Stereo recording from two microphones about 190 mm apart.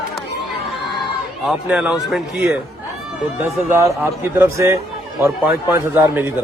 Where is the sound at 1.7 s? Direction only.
5° right (ahead or behind).